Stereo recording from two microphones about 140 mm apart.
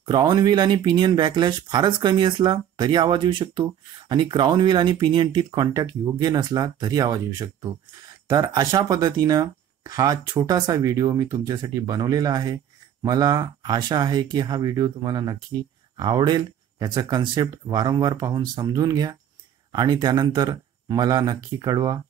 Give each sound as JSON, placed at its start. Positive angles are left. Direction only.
{"t": 0.0, "sound": "speech", "side_deg": -30}